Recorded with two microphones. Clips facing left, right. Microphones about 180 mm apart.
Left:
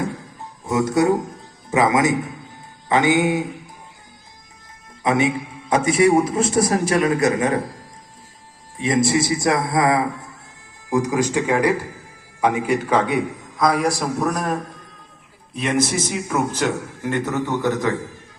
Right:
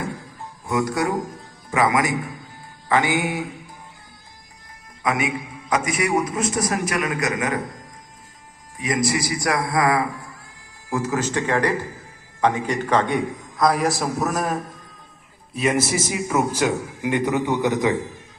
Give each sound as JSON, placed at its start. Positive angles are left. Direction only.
{"t": 0.6, "sound": "a man's voice", "side_deg": 25}
{"t": 5.0, "sound": "a man's voice", "side_deg": 25}
{"t": 8.8, "sound": "a man's voice", "side_deg": 25}